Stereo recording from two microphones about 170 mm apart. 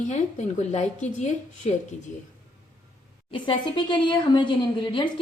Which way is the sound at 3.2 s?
30° left (ahead or behind).